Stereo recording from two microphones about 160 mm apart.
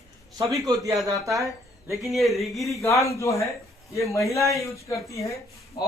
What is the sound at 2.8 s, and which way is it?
Speech, 20° left (ahead or behind).